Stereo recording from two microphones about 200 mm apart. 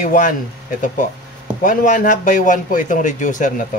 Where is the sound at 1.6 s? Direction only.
40° left (ahead or behind).